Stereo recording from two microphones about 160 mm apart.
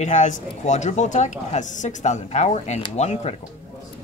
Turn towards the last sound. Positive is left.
turn(degrees=45)  # may be behind; listen again after turning